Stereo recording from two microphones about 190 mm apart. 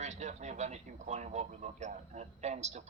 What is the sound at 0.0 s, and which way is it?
A man's voice, 35° right (ahead or behind).